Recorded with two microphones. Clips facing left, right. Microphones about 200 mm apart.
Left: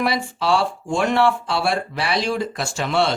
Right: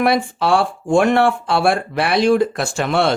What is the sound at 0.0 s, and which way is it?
Speech, 55° right (ahead or behind).